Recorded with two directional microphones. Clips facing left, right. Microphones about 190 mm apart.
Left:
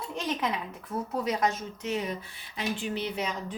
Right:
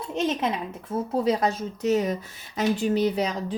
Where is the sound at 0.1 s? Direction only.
25° right (ahead or behind).